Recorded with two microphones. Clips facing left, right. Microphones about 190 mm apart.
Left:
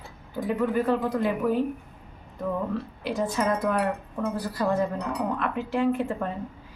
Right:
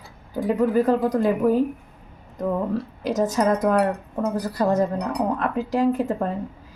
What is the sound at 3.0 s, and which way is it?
Speech, 40° right (ahead or behind).